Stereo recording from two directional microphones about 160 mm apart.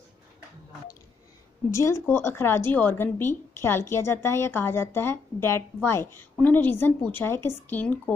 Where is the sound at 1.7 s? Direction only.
20° left (ahead or behind).